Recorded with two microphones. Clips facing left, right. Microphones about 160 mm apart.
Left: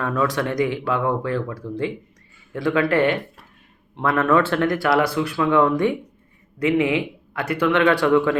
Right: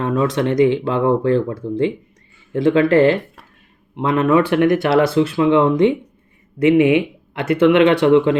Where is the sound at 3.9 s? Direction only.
20° right (ahead or behind).